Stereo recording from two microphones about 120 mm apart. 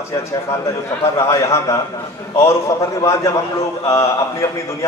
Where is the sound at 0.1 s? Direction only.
25° left (ahead or behind).